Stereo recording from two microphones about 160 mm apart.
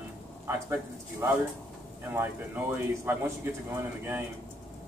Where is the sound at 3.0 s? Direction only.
15° right (ahead or behind).